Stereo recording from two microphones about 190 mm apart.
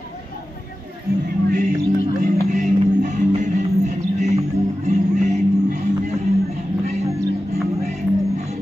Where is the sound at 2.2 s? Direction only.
40° right (ahead or behind).